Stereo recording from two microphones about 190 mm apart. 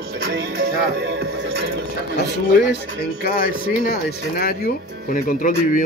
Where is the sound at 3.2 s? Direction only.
50° left (ahead or behind).